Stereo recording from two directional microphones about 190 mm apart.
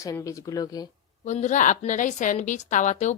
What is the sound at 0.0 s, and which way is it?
Speech, 15° left (ahead or behind).